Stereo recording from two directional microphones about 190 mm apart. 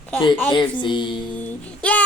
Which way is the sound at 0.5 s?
25° left (ahead or behind).